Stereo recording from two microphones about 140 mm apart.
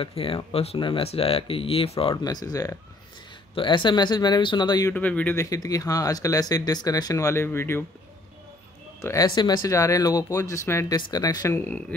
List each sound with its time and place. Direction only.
0.0 s speech: 40° left (ahead or behind)
2.2 s speech: 25° left (ahead or behind)
4.9 s speech: 10° left (ahead or behind)
5.4 s speech: 25° left (ahead or behind)
9.0 s speech: 25° left (ahead or behind)